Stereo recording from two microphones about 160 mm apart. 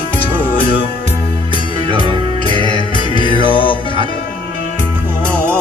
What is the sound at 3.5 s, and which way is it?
Music, 30° left (ahead or behind).